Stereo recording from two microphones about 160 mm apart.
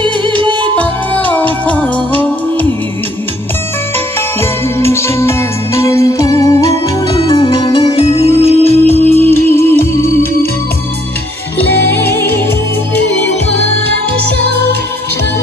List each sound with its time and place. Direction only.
0.0 s music: 30° right (ahead or behind)
0.7 s music: 10° left (ahead or behind)
4.4 s music: 15° left (ahead or behind)
7.2 s music: 35° left (ahead or behind)
9.1 s music: 15° left (ahead or behind)
12.1 s music: 15° left (ahead or behind)